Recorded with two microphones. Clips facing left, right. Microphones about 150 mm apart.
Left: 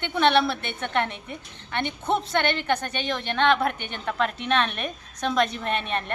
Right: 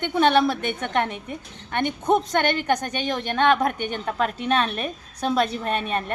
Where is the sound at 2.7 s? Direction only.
15° right (ahead or behind).